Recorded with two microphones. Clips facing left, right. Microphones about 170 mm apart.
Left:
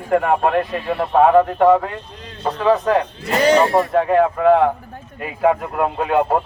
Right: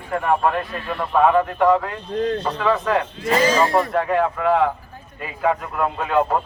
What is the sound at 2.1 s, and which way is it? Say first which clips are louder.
Speech: right 17 dB; 55° right (ahead or behind).